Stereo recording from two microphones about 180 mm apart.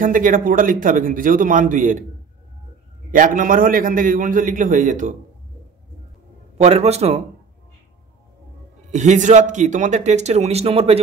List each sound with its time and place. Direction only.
0.0 s speech: 50° right (ahead or behind)
3.1 s speech: 45° right (ahead or behind)
6.6 s a man's voice: 35° right (ahead or behind)
8.9 s a man's voice: 40° right (ahead or behind)